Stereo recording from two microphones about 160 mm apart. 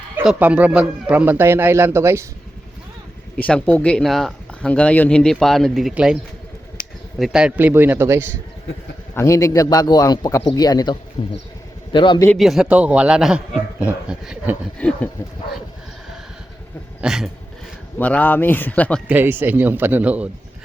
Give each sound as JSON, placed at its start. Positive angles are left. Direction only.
{"t": 0.3, "sound": "speech", "side_deg": -10}
{"t": 3.3, "sound": "speech", "side_deg": 10}
{"t": 7.2, "sound": "speech", "side_deg": -5}
{"t": 9.1, "sound": "a man's voice", "side_deg": 20}
{"t": 11.2, "sound": "a man's voice", "side_deg": 40}
{"t": 12.4, "sound": "speech", "side_deg": 0}
{"t": 14.8, "sound": "speech", "side_deg": 10}
{"t": 17.0, "sound": "speech", "side_deg": -5}
{"t": 18.0, "sound": "speech", "side_deg": 10}
{"t": 19.0, "sound": "speech", "side_deg": -10}